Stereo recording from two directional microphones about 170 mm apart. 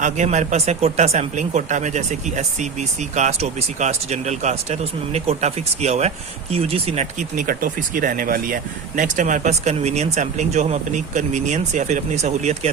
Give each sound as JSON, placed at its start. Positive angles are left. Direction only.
{"t": 0.0, "sound": "speech", "side_deg": -45}